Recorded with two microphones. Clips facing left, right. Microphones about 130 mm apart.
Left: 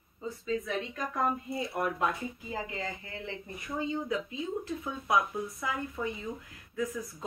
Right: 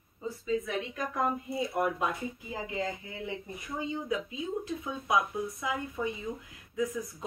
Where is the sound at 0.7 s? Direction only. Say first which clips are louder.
Right 1 dB; 10° right (ahead or behind).